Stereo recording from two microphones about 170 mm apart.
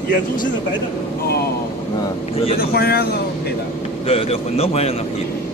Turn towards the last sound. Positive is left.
turn(degrees=35)  # may be behind; listen again after turning